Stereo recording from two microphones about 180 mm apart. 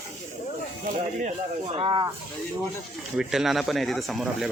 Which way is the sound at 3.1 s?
Centre (ahead or behind).